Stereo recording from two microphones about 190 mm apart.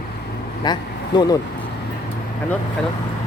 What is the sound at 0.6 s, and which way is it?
Speech, 20° left (ahead or behind).